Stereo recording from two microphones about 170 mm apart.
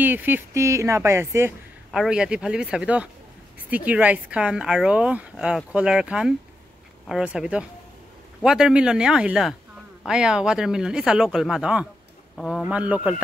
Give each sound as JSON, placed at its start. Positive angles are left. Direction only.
{"t": 0.0, "sound": "speech", "side_deg": -10}
{"t": 1.9, "sound": "speech", "side_deg": -5}
{"t": 12.7, "sound": "speech", "side_deg": -10}